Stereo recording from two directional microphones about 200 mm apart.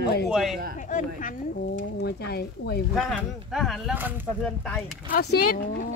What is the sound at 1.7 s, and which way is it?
Speech, 55° left (ahead or behind).